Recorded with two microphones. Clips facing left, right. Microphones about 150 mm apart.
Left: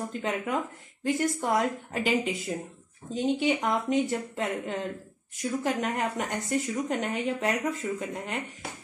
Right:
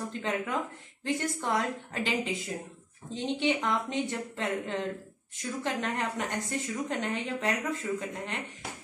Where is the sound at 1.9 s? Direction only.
10° left (ahead or behind).